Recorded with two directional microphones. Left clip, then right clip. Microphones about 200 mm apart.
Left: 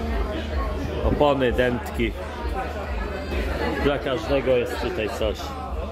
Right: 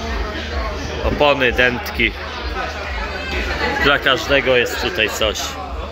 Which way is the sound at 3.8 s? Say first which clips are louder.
Right 11 dB; 5° left (ahead or behind).